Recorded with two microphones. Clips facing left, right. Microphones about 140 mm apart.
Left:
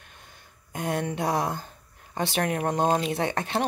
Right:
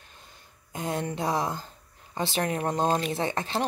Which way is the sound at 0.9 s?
Centre (ahead or behind).